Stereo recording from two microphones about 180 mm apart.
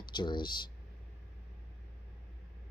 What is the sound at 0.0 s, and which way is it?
Speech, 25° left (ahead or behind).